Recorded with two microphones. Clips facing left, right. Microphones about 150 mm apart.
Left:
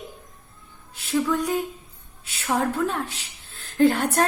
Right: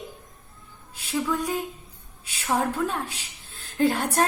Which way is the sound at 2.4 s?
10° right (ahead or behind).